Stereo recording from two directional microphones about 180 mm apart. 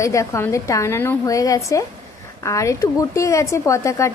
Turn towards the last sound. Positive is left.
turn(degrees=15)  # may be behind; listen again after turning